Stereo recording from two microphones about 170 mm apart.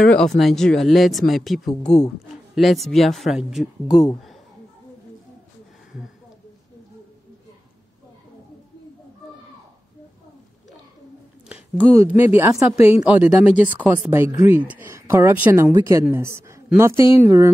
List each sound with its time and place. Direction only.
0.0 s speech: 5° left (ahead or behind)
11.4 s a sound: 10° right (ahead or behind)
12.1 s speech: 10° right (ahead or behind)
12.7 s speech: 35° left (ahead or behind)
13.0 s speech: 5° right (ahead or behind)